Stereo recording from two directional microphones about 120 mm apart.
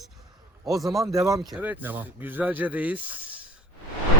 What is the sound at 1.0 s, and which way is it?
Speech, 25° right (ahead or behind).